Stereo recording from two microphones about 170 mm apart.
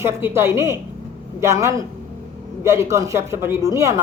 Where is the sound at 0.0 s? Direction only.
15° right (ahead or behind).